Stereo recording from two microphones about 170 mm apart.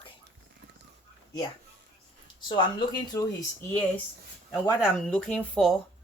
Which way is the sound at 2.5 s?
25° left (ahead or behind).